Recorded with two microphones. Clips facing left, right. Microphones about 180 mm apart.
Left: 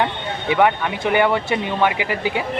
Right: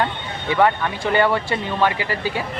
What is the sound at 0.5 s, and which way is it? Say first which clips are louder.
Speech: left 1 dB; 15° left (ahead or behind).